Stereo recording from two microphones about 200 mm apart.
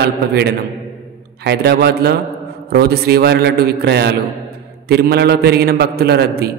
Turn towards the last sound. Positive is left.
turn(degrees=-50)  # may be behind; listen again after turning